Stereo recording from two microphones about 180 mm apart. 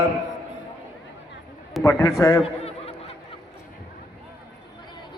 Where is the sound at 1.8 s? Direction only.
15° left (ahead or behind).